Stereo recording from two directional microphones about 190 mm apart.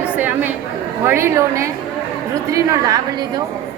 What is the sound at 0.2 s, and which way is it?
Chatter, 10° right (ahead or behind).